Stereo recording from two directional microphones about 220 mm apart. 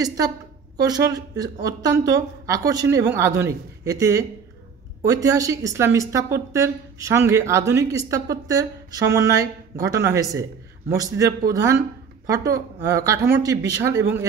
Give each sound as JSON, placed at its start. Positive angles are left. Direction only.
{"t": 0.7, "sound": "speech", "side_deg": -15}